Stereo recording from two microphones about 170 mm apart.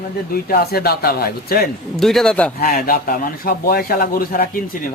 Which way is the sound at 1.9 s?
Centre (ahead or behind).